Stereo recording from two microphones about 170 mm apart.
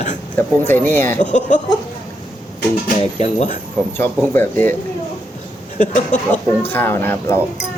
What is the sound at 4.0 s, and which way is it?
Speech, 15° left (ahead or behind).